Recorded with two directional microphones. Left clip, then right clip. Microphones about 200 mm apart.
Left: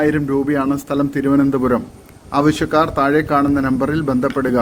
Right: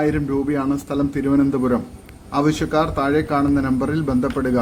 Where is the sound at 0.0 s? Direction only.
5° left (ahead or behind).